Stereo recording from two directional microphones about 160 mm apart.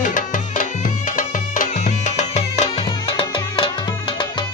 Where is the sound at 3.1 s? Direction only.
35° left (ahead or behind).